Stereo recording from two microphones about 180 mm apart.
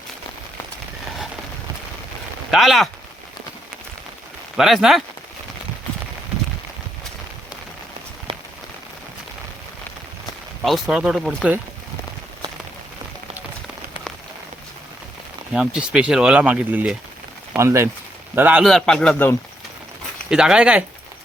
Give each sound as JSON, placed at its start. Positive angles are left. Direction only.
{"t": 2.5, "sound": "speech", "side_deg": 0}
{"t": 4.5, "sound": "speech", "side_deg": 0}
{"t": 8.3, "sound": "rain on surface", "side_deg": -30}
{"t": 10.6, "sound": "speech", "side_deg": 0}
{"t": 15.5, "sound": "a man's voice", "side_deg": -5}
{"t": 18.6, "sound": "speech", "side_deg": 0}
{"t": 20.3, "sound": "speech", "side_deg": -5}